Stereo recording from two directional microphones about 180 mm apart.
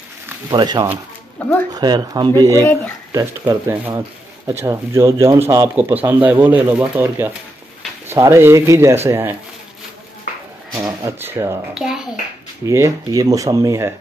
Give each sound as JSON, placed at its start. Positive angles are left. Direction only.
{"t": 0.5, "sound": "speech", "side_deg": -25}
{"t": 2.5, "sound": "speech", "side_deg": 10}
{"t": 3.1, "sound": "speech", "side_deg": -20}
{"t": 10.7, "sound": "a sound", "side_deg": -15}
{"t": 11.7, "sound": "a child's voice", "side_deg": -5}
{"t": 12.6, "sound": "speech", "side_deg": -15}